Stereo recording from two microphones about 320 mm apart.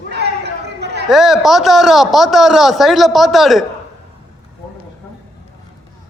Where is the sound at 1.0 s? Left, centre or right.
Centre.